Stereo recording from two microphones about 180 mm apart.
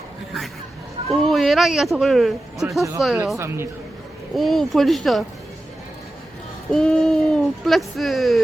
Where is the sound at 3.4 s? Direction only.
15° right (ahead or behind).